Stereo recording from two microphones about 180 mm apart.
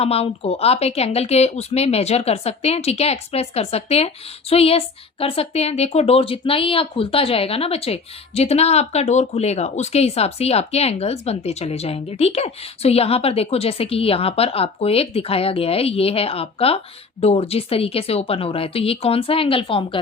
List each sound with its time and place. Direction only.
0.0 s speech: 35° left (ahead or behind)